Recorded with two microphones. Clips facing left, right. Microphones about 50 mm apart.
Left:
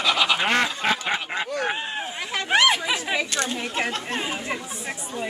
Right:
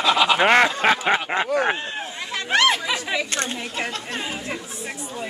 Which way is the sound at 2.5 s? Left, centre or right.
Centre.